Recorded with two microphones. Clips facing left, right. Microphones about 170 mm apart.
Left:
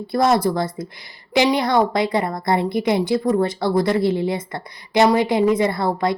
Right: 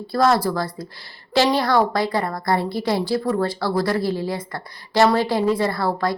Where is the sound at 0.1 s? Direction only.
20° left (ahead or behind).